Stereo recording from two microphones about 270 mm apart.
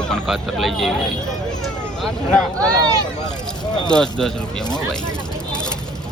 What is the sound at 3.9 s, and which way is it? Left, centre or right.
Speech, centre.